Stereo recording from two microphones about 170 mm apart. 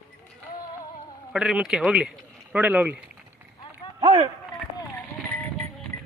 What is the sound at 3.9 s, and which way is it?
Run, 30° right (ahead or behind).